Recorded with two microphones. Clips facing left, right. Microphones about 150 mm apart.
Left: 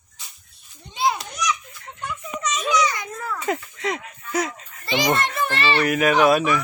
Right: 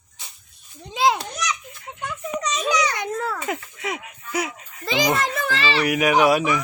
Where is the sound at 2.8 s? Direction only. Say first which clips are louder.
Right 1 dB; 70° right (ahead or behind).